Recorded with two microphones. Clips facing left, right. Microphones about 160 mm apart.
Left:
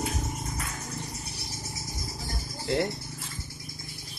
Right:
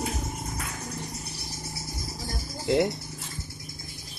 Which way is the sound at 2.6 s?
15° right (ahead or behind).